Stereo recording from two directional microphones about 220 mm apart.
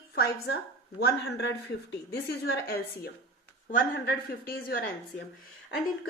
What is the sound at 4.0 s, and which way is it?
Speech, 45° left (ahead or behind).